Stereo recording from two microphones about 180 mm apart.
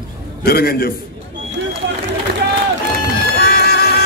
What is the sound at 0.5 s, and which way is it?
Speech, 55° left (ahead or behind).